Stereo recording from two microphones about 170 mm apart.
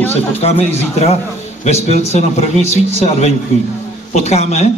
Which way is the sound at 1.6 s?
40° left (ahead or behind).